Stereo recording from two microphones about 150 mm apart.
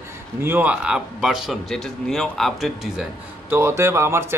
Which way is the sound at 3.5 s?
15° right (ahead or behind).